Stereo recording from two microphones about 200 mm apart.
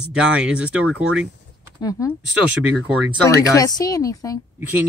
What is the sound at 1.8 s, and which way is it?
Speech, 15° left (ahead or behind).